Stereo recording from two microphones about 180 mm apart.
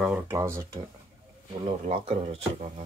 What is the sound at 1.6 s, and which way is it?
Speech, 35° right (ahead or behind).